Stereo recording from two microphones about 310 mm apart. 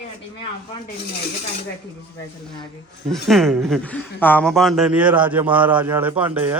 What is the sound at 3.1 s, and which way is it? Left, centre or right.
A man's voice, centre.